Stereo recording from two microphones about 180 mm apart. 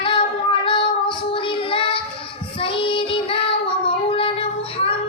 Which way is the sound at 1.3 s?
30° left (ahead or behind).